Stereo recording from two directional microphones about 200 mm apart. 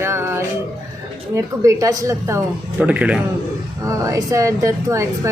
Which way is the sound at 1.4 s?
15° right (ahead or behind).